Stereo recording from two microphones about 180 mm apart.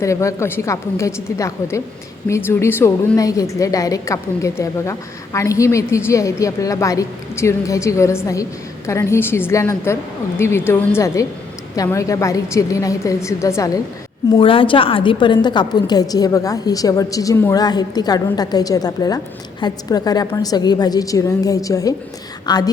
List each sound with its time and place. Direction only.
0.0 s a woman's voice: 15° left (ahead or behind)
14.3 s a woman's voice: 30° left (ahead or behind)